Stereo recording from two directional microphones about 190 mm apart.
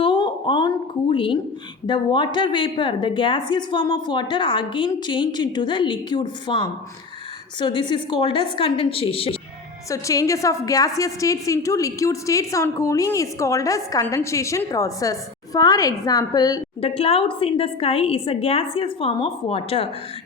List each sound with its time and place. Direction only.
0.0 s a sound: 25° left (ahead or behind)
1.1 s a woman's voice: 25° left (ahead or behind)
9.9 s a woman's voice: 15° left (ahead or behind)
16.9 s a woman's voice: 30° left (ahead or behind)